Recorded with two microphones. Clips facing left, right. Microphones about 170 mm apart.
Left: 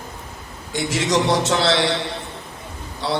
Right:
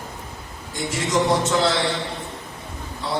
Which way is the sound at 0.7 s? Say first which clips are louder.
Left 3 dB; 75° left (ahead or behind).